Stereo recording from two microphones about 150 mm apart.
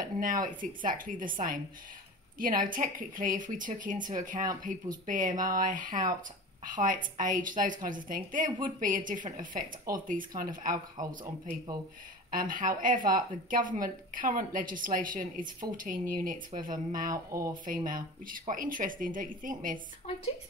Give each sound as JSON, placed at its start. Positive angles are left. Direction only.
{"t": 0.0, "sound": "a sound", "side_deg": -65}
{"t": 0.5, "sound": "speech", "side_deg": -65}
{"t": 12.3, "sound": "speech", "side_deg": -65}
{"t": 17.1, "sound": "speech", "side_deg": -20}
{"t": 17.6, "sound": "speech", "side_deg": -65}